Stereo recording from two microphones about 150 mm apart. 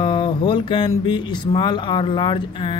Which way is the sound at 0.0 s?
30° left (ahead or behind).